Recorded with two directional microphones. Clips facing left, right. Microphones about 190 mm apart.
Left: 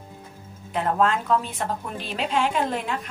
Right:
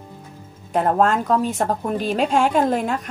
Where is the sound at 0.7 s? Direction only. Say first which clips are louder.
Right 5 dB; 45° right (ahead or behind).